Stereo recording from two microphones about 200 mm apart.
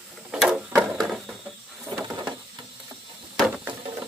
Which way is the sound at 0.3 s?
5° right (ahead or behind).